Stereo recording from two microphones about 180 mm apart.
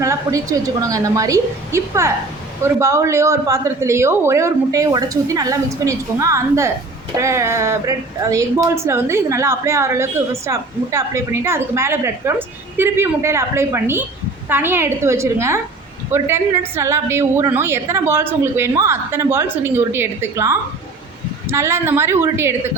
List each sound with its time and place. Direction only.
0.0 s a woman's voice: 20° right (ahead or behind)